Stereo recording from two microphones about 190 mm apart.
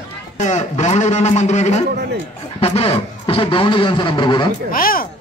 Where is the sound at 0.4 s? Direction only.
40° left (ahead or behind); by 4.5 s 25° left (ahead or behind).